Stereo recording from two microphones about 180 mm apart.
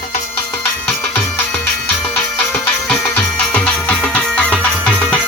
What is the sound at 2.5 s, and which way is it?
Music, 10° left (ahead or behind).